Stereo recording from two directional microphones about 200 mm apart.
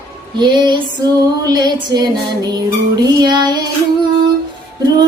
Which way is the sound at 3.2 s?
20° right (ahead or behind).